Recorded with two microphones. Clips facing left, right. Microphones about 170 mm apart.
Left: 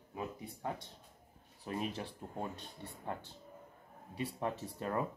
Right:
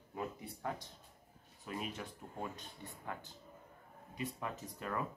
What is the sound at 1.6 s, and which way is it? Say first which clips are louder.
Speech: left 4 dB; 35° left (ahead or behind).